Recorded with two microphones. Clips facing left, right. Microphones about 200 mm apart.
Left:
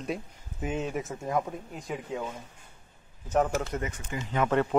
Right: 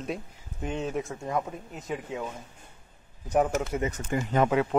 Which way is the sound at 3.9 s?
40° right (ahead or behind).